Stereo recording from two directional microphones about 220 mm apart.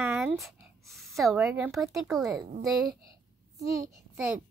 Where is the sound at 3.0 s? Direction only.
15° right (ahead or behind).